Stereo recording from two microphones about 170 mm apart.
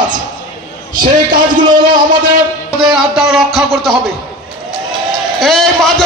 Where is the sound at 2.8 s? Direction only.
5° right (ahead or behind).